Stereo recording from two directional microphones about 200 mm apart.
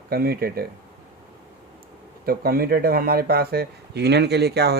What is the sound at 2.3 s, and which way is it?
Speech, 50° right (ahead or behind).